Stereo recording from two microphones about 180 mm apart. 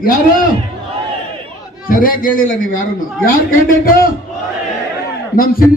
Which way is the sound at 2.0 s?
50° left (ahead or behind).